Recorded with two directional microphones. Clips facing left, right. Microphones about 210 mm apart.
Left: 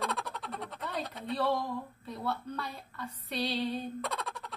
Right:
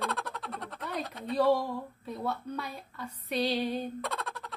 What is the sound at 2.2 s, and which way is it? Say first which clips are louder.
A woman's voice: right 1 dB; 10° right (ahead or behind).